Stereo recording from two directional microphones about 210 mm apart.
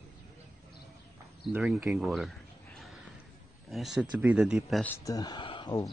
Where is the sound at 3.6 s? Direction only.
Centre (ahead or behind).